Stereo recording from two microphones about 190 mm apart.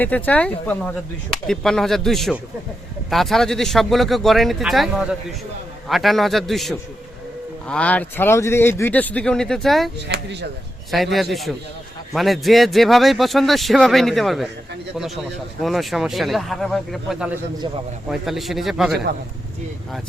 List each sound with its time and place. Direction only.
0.0 s speech: 10° left (ahead or behind)
10.1 s speech: 60° right (ahead or behind)
10.9 s speech: centre (ahead or behind)